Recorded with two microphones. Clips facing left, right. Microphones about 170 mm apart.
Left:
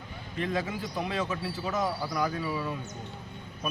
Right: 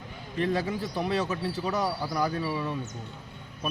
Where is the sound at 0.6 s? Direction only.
35° right (ahead or behind).